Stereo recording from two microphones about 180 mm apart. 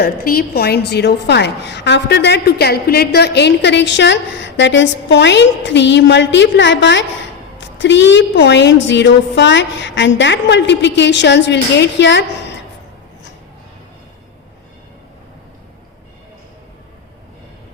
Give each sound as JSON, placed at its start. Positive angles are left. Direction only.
{"t": 0.0, "sound": "a woman's voice", "side_deg": 60}